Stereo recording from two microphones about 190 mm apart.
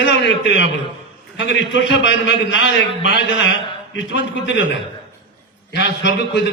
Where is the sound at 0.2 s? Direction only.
65° left (ahead or behind).